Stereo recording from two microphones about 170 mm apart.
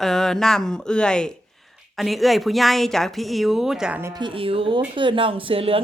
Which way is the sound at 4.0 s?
25° right (ahead or behind).